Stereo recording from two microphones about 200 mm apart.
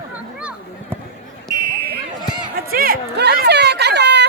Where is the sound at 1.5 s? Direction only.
15° left (ahead or behind).